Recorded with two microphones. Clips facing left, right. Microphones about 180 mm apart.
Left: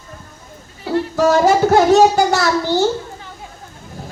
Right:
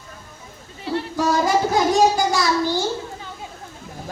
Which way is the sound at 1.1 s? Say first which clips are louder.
Left 6 dB; 70° left (ahead or behind).